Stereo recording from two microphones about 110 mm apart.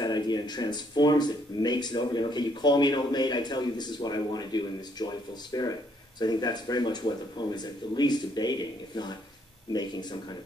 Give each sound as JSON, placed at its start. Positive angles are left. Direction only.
{"t": 0.0, "sound": "speech", "side_deg": 40}